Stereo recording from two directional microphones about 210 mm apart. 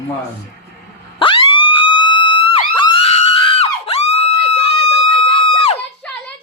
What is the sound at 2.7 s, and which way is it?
Screaming, 25° left (ahead or behind).